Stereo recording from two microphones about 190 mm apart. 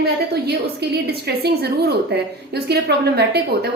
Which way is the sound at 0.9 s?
55° right (ahead or behind).